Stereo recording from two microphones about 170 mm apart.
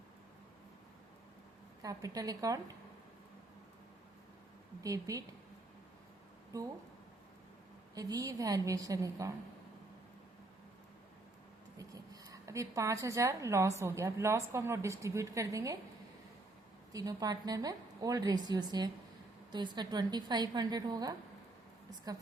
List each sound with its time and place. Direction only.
1.8 s a woman's voice: 20° right (ahead or behind)
4.8 s a woman's voice: 20° right (ahead or behind)
6.5 s a woman's voice: 20° right (ahead or behind)
7.9 s a woman's voice: 20° right (ahead or behind)
11.8 s speech: 20° right (ahead or behind)
16.9 s a woman's voice: 20° right (ahead or behind)